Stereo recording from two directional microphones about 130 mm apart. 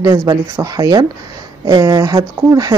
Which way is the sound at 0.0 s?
25° right (ahead or behind).